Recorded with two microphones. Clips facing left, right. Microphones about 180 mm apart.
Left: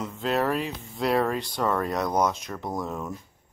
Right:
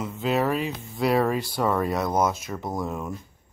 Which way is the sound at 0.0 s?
5° right (ahead or behind).